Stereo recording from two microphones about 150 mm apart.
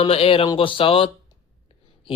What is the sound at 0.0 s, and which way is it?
Speech, 40° left (ahead or behind).